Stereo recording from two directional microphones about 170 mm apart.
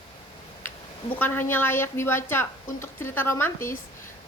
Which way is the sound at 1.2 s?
10° left (ahead or behind).